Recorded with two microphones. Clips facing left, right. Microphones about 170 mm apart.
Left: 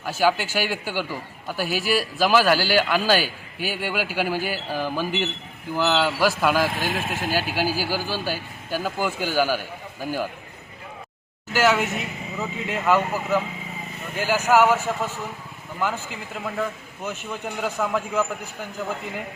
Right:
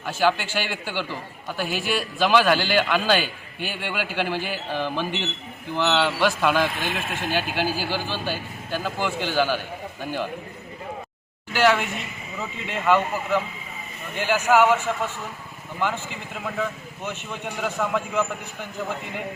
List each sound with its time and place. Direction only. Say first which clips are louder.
0.0 s a man's voice: left 1 dB; 10° left (ahead or behind)
11.5 s speech: even; 5° left (ahead or behind)
15.8 s speech: even; centre (ahead or behind)